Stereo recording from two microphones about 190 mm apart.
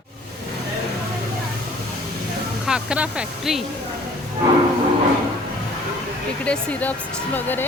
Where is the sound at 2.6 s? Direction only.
5° right (ahead or behind).